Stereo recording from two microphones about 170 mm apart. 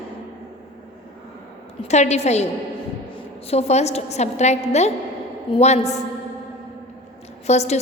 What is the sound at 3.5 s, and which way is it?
A woman's voice, 40° left (ahead or behind).